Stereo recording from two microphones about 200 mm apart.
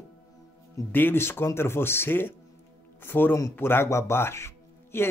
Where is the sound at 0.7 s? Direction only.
10° left (ahead or behind).